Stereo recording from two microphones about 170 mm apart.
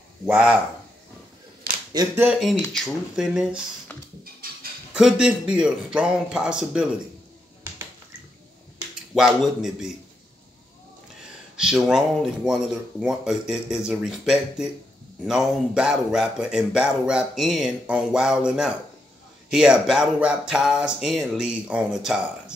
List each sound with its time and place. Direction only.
0.3 s speech: 5° right (ahead or behind)
2.0 s speech: 25° right (ahead or behind)
2.3 s speech: centre (ahead or behind)
4.9 s speech: 5° right (ahead or behind)
9.1 s speech: centre (ahead or behind)
11.5 s speech: 5° right (ahead or behind)